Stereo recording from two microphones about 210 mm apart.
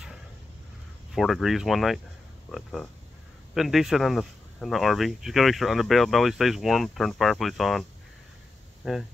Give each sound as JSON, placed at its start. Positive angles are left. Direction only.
{"t": 1.1, "sound": "speech", "side_deg": 0}
{"t": 8.8, "sound": "speech", "side_deg": 0}